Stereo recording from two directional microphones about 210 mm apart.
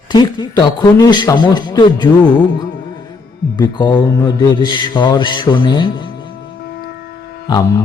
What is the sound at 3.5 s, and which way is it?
Mantra, 20° left (ahead or behind).